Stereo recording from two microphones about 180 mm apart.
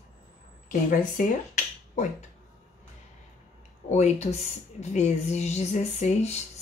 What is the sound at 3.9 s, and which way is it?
Speech, 40° left (ahead or behind).